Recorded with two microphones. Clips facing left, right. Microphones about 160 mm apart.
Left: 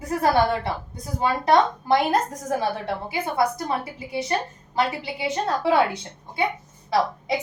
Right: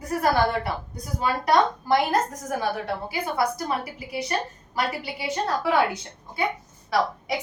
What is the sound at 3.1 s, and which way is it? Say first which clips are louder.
A woman's voice: left 3 dB; 25° left (ahead or behind).